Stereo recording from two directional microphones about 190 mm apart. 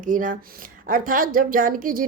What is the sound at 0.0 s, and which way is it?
A woman's voice, 45° right (ahead or behind).